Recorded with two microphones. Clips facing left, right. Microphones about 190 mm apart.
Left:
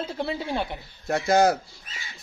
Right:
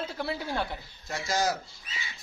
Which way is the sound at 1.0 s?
60° left (ahead or behind).